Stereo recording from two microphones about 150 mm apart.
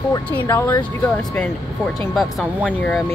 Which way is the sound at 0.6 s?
10° left (ahead or behind).